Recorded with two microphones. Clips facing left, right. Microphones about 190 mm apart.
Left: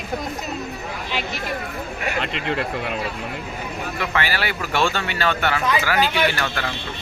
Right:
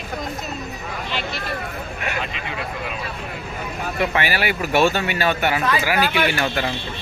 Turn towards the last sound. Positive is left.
turn(degrees=-15)  # may be behind; listen again after turning